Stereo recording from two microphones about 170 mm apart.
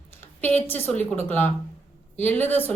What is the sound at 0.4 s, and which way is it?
A woman's voice, 10° left (ahead or behind).